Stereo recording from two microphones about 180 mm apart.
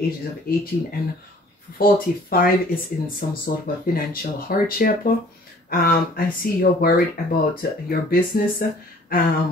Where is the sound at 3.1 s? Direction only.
55° left (ahead or behind).